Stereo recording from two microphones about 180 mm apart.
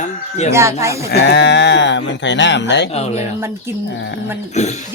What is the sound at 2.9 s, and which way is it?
Speech, 35° left (ahead or behind).